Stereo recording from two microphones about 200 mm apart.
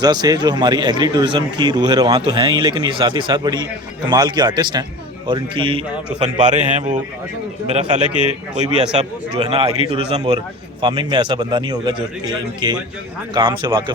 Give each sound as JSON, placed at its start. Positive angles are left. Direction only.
{"t": 0.0, "sound": "a man's voice", "side_deg": -20}
{"t": 6.1, "sound": "a man's voice", "side_deg": -35}
{"t": 9.4, "sound": "a man's voice", "side_deg": -25}